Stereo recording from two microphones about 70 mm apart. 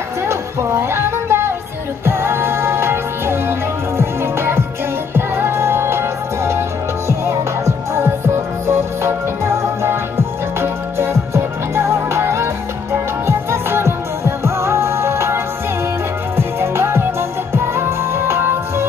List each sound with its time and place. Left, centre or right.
0.3 s music: right